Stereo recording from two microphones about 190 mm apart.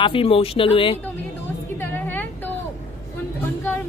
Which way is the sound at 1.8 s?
10° left (ahead or behind).